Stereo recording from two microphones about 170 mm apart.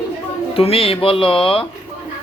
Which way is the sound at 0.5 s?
35° left (ahead or behind).